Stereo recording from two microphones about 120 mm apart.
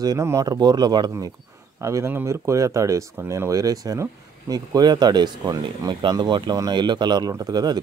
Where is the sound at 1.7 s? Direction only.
25° right (ahead or behind).